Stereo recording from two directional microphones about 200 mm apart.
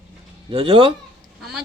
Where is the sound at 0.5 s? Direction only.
25° right (ahead or behind).